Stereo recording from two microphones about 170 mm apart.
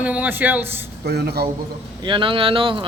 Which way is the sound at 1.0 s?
70° right (ahead or behind).